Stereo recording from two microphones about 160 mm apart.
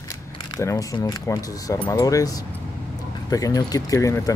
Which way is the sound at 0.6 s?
20° left (ahead or behind).